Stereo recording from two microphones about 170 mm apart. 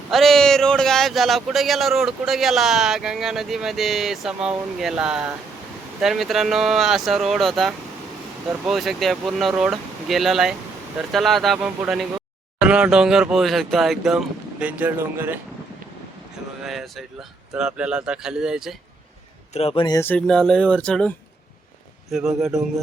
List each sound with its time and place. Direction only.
0.1 s speech: centre (ahead or behind)
16.6 s speech: centre (ahead or behind)
19.5 s speech: 35° left (ahead or behind)
20.0 s speech: 10° left (ahead or behind)
22.1 s speech: 5° right (ahead or behind)